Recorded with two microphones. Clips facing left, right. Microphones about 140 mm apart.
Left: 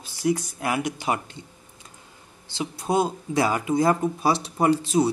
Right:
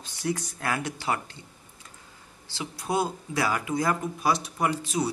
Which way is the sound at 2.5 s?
20° left (ahead or behind).